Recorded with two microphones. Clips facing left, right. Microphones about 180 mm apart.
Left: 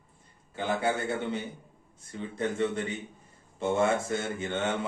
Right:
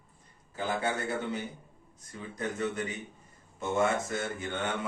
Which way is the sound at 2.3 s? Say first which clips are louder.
Left 4 dB; 30° left (ahead or behind).